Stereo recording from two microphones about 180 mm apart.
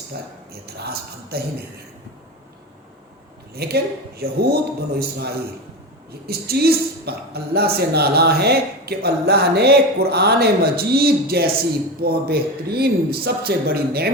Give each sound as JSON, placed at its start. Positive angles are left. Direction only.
{"t": 0.1, "sound": "a woman's voice", "side_deg": -65}
{"t": 3.5, "sound": "a woman's voice", "side_deg": -60}